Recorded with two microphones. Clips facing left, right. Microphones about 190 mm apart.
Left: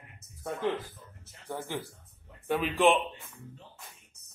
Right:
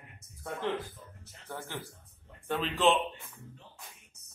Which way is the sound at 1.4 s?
15° left (ahead or behind).